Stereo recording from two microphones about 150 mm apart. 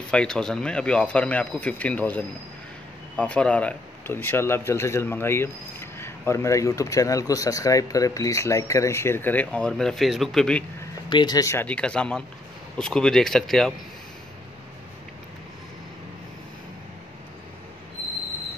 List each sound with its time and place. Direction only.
0.1 s speech: 5° left (ahead or behind)
11.1 s speech: 30° left (ahead or behind)
11.6 s speech: 5° left (ahead or behind)